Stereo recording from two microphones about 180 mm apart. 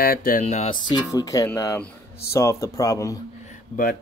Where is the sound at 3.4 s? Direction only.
45° left (ahead or behind).